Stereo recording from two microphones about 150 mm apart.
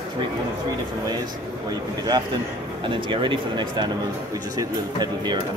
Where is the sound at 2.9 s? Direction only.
30° right (ahead or behind).